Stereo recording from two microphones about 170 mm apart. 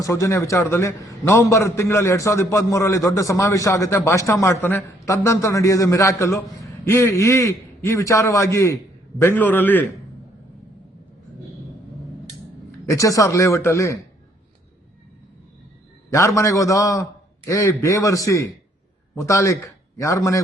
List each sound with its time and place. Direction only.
0.0 s a man's voice: 20° left (ahead or behind)
12.8 s a man's voice: 20° left (ahead or behind)
16.0 s a man's voice: 15° left (ahead or behind)